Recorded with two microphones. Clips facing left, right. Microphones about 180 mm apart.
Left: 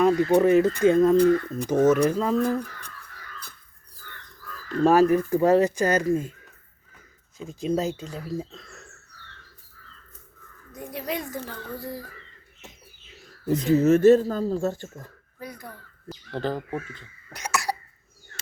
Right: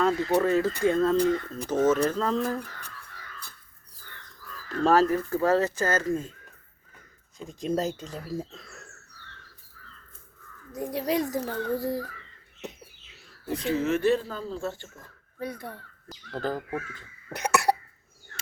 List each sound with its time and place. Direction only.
0.0 s a sound: 15° left (ahead or behind)
0.3 s speech: 20° left (ahead or behind)
4.8 s speech: 15° left (ahead or behind)
7.3 s speech: centre (ahead or behind)
10.8 s a child's voice: 35° right (ahead or behind)
13.7 s speech: 40° left (ahead or behind)
15.4 s speech: 30° right (ahead or behind)
16.0 s speech: centre (ahead or behind)
16.9 s cough: 55° right (ahead or behind)